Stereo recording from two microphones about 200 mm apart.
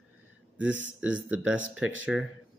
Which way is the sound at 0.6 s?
70° right (ahead or behind).